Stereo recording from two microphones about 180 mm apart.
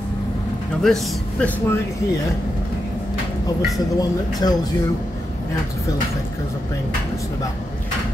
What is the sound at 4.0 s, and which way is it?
Speech, 20° left (ahead or behind).